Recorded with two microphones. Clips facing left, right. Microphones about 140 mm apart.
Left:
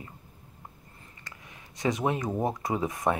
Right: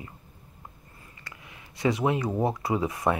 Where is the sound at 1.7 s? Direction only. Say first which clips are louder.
Right 3 dB; 45° left (ahead or behind).